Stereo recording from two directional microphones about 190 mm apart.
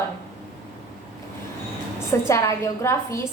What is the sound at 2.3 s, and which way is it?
A woman's voice, 15° left (ahead or behind).